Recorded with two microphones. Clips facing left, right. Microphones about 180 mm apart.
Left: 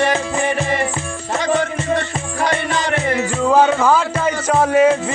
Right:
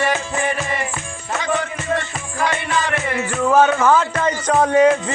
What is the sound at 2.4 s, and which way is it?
Music, 40° left (ahead or behind).